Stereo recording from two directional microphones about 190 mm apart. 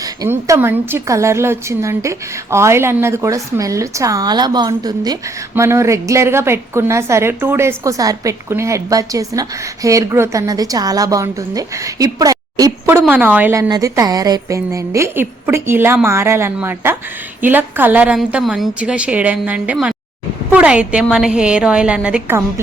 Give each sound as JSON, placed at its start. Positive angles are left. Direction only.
{"t": 0.0, "sound": "a woman's voice", "side_deg": -15}